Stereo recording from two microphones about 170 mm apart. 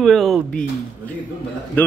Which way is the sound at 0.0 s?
Centre (ahead or behind).